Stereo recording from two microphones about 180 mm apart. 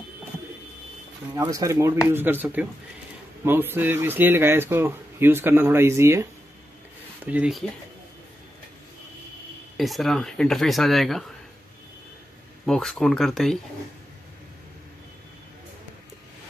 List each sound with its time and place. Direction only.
1.3 s speech: 20° right (ahead or behind)
7.2 s speech: 5° right (ahead or behind)
9.8 s speech: centre (ahead or behind)
12.6 s speech: 5° left (ahead or behind)